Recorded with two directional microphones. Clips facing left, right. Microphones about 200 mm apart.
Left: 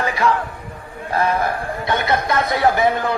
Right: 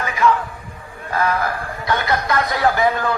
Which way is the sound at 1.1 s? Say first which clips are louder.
Left 1 dB; 30° left (ahead or behind).